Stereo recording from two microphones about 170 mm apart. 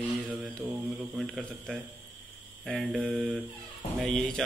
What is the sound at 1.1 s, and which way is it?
Speech, centre (ahead or behind).